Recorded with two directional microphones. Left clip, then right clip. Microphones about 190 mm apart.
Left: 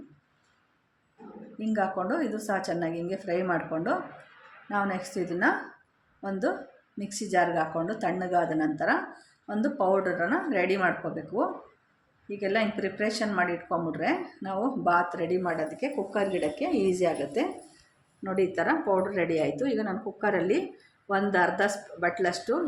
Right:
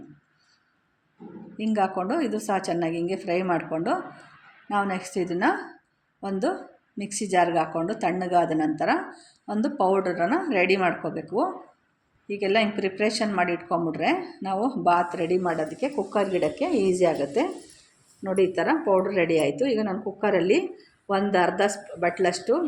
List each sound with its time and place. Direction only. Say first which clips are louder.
1.5 s speech: right 4 dB; 15° right (ahead or behind)
7.0 s speech: right 3 dB; 15° right (ahead or behind)